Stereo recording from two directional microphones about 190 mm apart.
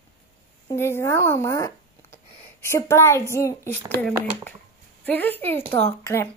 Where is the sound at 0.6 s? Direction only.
10° left (ahead or behind).